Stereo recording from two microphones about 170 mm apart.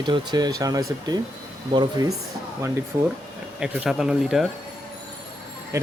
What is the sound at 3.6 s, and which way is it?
Speech, 5° right (ahead or behind).